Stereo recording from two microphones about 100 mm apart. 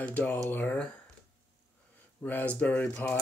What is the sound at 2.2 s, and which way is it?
Speech, 15° left (ahead or behind).